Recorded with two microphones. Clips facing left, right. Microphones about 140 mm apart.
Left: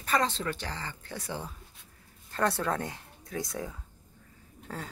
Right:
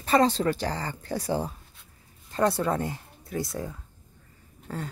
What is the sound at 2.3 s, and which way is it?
Speech, 15° right (ahead or behind).